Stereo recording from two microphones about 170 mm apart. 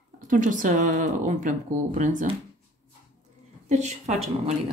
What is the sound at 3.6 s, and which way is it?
Speech, 40° right (ahead or behind).